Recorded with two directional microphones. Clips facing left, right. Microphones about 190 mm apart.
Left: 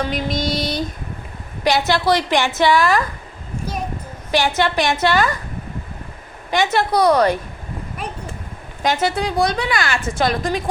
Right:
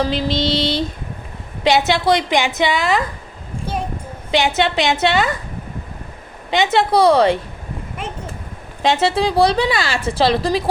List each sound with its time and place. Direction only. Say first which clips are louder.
0.0 s a woman's voice: right 3 dB; 30° right (ahead or behind)
4.3 s a woman's voice: right 1 dB; 20° right (ahead or behind)
6.5 s a woman's voice: right 2 dB; 25° right (ahead or behind)
8.8 s speech: right 3 dB; 25° right (ahead or behind)